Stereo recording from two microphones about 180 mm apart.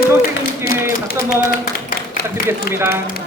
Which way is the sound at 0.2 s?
60° left (ahead or behind).